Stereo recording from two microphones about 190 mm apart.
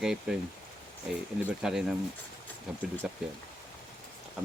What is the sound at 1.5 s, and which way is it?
Speech, centre (ahead or behind).